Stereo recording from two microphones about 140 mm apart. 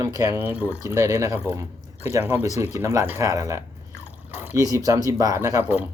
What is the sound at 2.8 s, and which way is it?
Speech, 20° right (ahead or behind).